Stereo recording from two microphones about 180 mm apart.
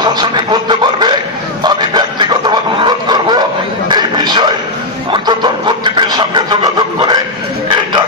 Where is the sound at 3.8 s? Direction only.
25° right (ahead or behind).